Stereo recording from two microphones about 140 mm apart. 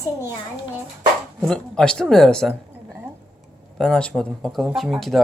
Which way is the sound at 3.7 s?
5° left (ahead or behind).